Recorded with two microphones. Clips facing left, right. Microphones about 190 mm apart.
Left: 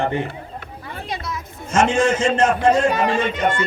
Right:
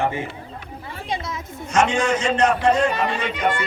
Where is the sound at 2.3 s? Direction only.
45° left (ahead or behind).